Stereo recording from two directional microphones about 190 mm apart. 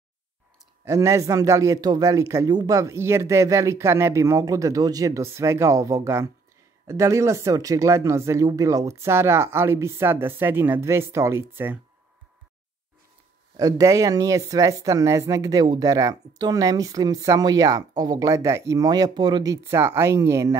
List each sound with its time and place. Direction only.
0.8 s speech: 15° right (ahead or behind)
13.6 s speech: 20° right (ahead or behind)